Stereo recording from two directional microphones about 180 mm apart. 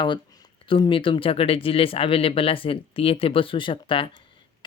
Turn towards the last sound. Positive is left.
turn(degrees=30)  # may be behind; listen again after turning